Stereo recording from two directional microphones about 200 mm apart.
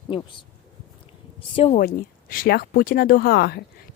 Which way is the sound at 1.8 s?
45° left (ahead or behind).